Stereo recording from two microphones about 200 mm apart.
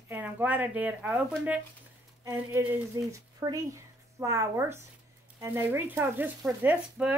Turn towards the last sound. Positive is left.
turn(degrees=-5)  # may be behind; listen again after turning